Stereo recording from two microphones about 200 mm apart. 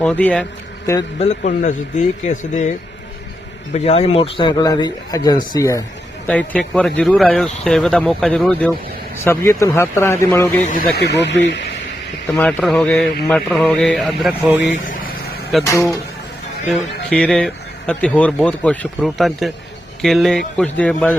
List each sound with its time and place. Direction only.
0.0 s speech: 5° left (ahead or behind)
1.2 s speech: 35° left (ahead or behind)
3.8 s speech: 30° left (ahead or behind)
6.2 s speech: 5° left (ahead or behind)
10.9 s speech: 60° left (ahead or behind)
12.4 s speech: 5° left (ahead or behind)
14.8 s vehicle: 45° left (ahead or behind)
15.6 s speech: 15° left (ahead or behind)